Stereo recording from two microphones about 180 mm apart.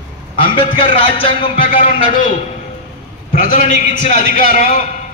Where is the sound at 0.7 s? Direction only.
30° left (ahead or behind).